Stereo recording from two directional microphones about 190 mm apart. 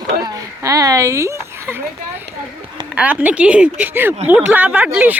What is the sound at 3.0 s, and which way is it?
Speech, 5° right (ahead or behind).